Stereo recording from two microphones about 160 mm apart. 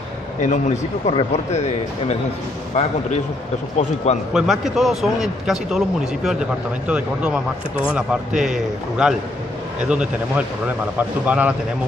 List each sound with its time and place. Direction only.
0.4 s a man's voice: 45° left (ahead or behind)
4.3 s a man's voice: centre (ahead or behind)